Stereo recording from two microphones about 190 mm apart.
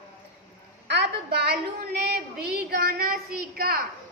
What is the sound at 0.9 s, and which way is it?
Speech, 60° right (ahead or behind).